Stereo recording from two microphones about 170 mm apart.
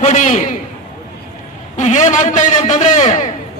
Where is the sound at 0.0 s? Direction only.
45° left (ahead or behind).